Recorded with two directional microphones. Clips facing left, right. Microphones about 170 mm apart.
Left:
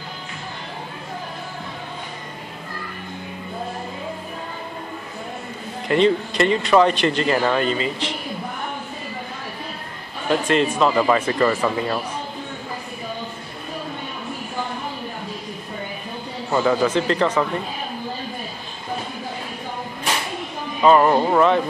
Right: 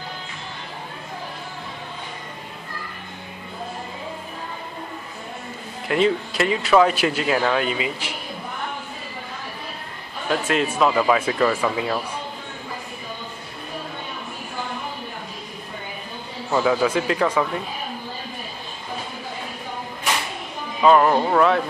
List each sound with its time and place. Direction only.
5.9 s speech: 5° right (ahead or behind)
10.3 s speech: 5° right (ahead or behind)
16.5 s speech: 5° right (ahead or behind)
20.8 s speech: 5° left (ahead or behind)